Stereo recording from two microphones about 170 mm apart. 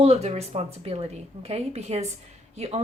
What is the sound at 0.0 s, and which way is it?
Speech, 40° right (ahead or behind).